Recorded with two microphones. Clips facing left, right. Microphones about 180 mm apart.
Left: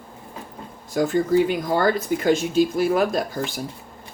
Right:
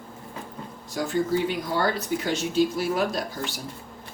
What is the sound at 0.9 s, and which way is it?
Speech, 50° left (ahead or behind).